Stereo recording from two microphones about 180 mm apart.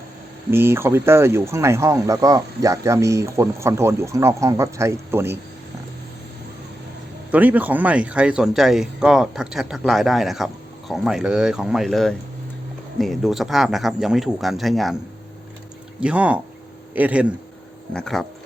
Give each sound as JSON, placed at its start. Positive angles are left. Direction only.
{"t": 0.5, "sound": "speech", "side_deg": -15}
{"t": 7.3, "sound": "speech", "side_deg": -10}
{"t": 16.0, "sound": "speech", "side_deg": -5}